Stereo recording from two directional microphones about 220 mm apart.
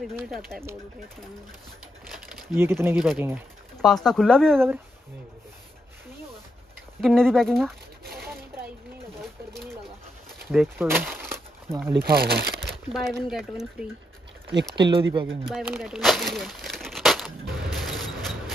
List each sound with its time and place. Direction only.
0.0 s speech: centre (ahead or behind)
2.0 s crumpling: centre (ahead or behind)
3.1 s speech: 10° right (ahead or behind)
7.0 s speech: centre (ahead or behind)
10.5 s a sound: 5° right (ahead or behind)
11.9 s speech: 45° right (ahead or behind)
12.5 s crumpling: centre (ahead or behind)
13.3 s speech: centre (ahead or behind)
14.8 s speech: 20° right (ahead or behind)
15.5 s crumpling: 5° right (ahead or behind)